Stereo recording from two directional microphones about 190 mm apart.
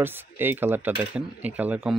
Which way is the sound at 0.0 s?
10° right (ahead or behind).